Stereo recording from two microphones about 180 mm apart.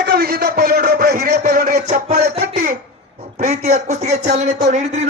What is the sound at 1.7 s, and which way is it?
Music, 40° right (ahead or behind).